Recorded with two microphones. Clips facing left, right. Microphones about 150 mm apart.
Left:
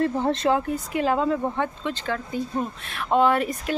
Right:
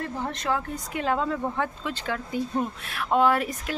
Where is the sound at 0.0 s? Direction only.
30° left (ahead or behind).